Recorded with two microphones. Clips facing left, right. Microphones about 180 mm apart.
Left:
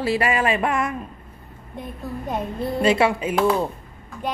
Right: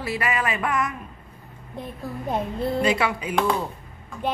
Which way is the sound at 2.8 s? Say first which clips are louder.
Left 9 dB; 25° left (ahead or behind).